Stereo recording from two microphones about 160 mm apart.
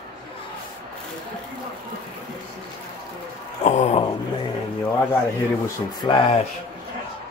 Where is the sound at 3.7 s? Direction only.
45° left (ahead or behind).